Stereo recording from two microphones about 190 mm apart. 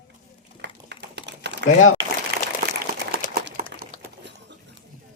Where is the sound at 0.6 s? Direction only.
65° right (ahead or behind).